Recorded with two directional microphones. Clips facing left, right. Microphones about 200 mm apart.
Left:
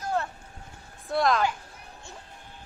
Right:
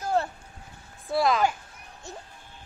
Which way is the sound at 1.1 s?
5° right (ahead or behind).